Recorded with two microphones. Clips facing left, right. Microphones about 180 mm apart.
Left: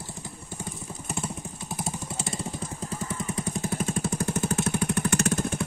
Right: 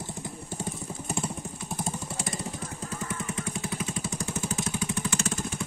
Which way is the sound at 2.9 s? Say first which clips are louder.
Left 2 dB; 35° left (ahead or behind).